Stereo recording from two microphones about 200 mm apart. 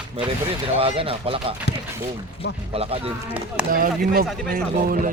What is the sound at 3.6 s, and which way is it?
Speech, 45° right (ahead or behind).